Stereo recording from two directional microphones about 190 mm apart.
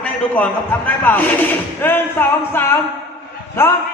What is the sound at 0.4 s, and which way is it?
Speech, 10° left (ahead or behind).